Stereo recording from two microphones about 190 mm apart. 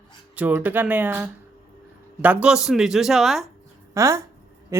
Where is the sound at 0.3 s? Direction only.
10° right (ahead or behind).